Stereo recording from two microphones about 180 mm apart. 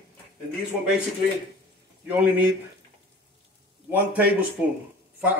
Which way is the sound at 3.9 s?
10° right (ahead or behind).